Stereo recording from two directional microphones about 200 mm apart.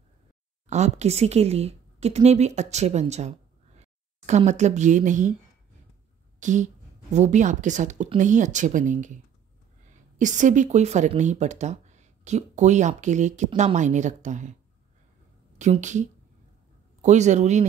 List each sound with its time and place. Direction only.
0.7 s speech: 35° right (ahead or behind)
6.4 s speech: 40° right (ahead or behind)
15.5 s speech: 35° right (ahead or behind)